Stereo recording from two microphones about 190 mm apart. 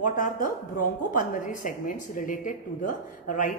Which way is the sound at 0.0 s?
45° left (ahead or behind).